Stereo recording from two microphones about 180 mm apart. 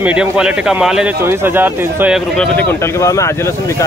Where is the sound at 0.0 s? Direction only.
5° right (ahead or behind).